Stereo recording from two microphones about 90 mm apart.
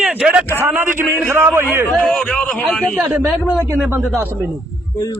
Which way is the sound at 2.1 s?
10° left (ahead or behind).